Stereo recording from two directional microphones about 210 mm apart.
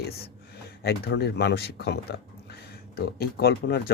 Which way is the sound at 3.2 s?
50° left (ahead or behind).